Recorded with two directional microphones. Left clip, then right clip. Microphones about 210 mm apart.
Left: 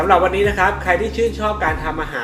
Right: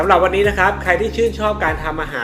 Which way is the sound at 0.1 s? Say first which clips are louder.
Right 1 dB; 15° right (ahead or behind).